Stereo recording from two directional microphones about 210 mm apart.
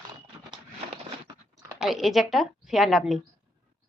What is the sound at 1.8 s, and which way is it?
Speech, centre (ahead or behind).